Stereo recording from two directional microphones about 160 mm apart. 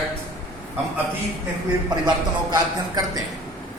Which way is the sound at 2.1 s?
25° right (ahead or behind).